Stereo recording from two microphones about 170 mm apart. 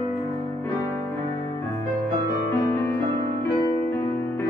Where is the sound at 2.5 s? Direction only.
15° left (ahead or behind).